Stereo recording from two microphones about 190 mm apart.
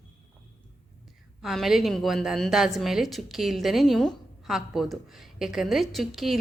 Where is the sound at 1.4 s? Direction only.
Centre (ahead or behind).